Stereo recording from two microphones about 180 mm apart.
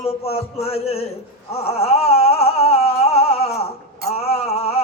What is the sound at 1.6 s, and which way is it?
Music, 35° left (ahead or behind).